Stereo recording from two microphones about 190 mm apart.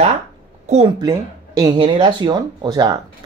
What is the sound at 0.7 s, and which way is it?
Speech, 35° right (ahead or behind).